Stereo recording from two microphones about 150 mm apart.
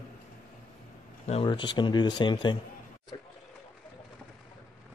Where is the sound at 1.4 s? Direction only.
30° left (ahead or behind).